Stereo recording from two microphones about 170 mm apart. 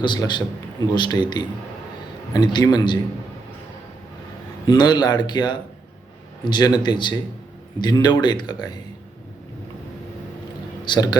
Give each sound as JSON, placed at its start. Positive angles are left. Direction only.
{"t": 0.0, "sound": "speech", "side_deg": 25}
{"t": 4.6, "sound": "speech", "side_deg": 25}
{"t": 10.8, "sound": "speech", "side_deg": 25}